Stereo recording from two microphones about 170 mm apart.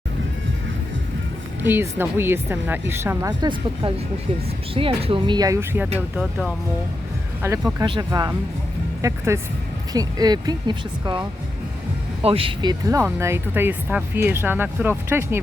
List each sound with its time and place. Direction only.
1.6 s speech: 15° right (ahead or behind)
4.7 s speech: 35° right (ahead or behind); by 5.9 s 15° right (ahead or behind)
7.4 s speech: 15° right (ahead or behind)
12.2 s speech: 35° right (ahead or behind); by 15.4 s 15° right (ahead or behind)